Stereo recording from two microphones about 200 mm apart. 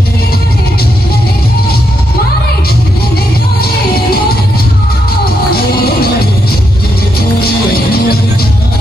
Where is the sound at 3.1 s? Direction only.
50° left (ahead or behind).